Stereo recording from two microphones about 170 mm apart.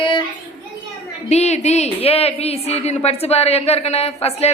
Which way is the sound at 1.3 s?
40° left (ahead or behind).